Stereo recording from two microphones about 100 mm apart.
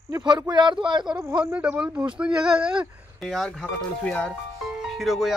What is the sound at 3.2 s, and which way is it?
Speech, centre (ahead or behind).